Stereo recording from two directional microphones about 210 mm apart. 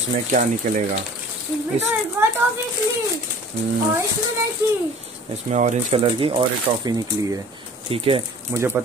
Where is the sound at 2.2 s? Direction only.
10° right (ahead or behind).